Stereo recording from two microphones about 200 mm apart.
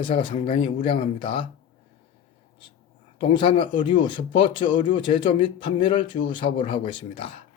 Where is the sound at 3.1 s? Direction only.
25° left (ahead or behind).